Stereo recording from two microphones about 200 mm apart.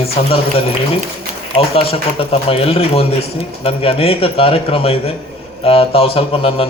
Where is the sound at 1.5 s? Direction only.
30° left (ahead or behind).